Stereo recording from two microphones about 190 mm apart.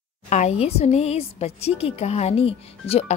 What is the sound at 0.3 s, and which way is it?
A woman's voice, 35° left (ahead or behind).